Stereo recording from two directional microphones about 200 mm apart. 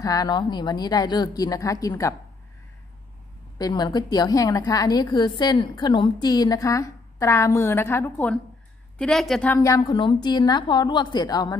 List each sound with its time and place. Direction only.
0.0 s a woman's voice: 20° left (ahead or behind)
3.5 s a woman's voice: 20° left (ahead or behind); by 9.6 s 5° left (ahead or behind)
9.6 s a woman's voice: 15° left (ahead or behind)